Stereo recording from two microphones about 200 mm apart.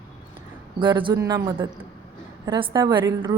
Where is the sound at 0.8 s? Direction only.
25° right (ahead or behind).